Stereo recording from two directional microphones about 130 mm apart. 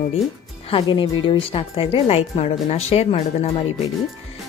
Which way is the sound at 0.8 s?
35° left (ahead or behind).